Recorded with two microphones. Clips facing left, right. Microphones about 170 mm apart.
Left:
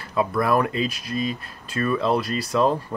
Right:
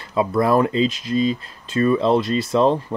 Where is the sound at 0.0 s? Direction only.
25° right (ahead or behind).